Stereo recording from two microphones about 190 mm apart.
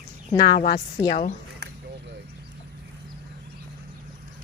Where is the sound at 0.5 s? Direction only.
45° left (ahead or behind).